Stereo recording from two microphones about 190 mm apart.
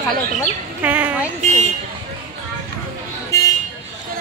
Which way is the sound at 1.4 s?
40° right (ahead or behind).